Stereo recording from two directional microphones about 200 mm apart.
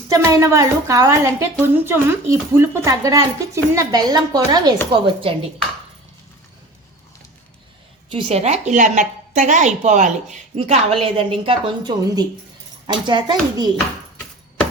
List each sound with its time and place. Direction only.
0.1 s a woman's voice: 15° right (ahead or behind)
8.1 s a woman's voice: 30° right (ahead or behind)